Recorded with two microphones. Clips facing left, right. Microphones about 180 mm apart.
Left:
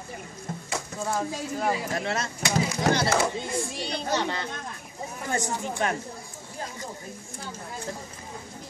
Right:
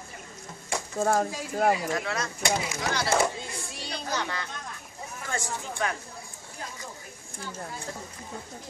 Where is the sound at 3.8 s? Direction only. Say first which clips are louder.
Left 2 dB; 25° left (ahead or behind).